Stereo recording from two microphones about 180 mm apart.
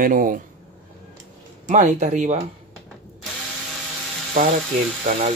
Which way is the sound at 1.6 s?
40° right (ahead or behind).